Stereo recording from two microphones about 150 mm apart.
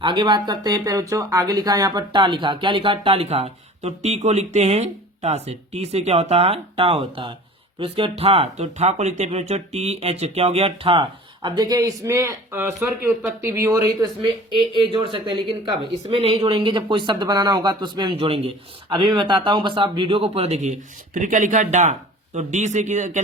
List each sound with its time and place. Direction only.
0.0 s speech: 30° right (ahead or behind); by 23.2 s 50° right (ahead or behind)